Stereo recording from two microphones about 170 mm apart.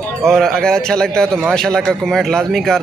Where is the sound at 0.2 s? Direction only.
5° left (ahead or behind).